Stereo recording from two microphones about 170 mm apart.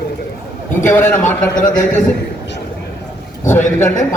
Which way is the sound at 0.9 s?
10° left (ahead or behind).